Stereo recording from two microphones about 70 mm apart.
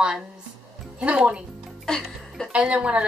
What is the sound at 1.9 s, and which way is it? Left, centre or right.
Music, centre.